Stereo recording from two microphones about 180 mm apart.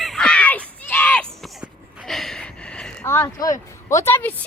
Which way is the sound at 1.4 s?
Centre (ahead or behind).